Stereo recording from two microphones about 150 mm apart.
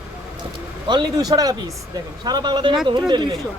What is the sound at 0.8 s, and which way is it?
Speech, 30° right (ahead or behind).